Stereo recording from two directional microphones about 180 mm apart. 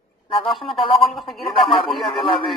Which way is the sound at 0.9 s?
Centre (ahead or behind).